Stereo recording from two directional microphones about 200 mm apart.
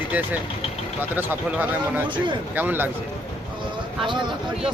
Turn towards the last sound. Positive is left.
turn(degrees=-25)  # may be behind; listen again after turning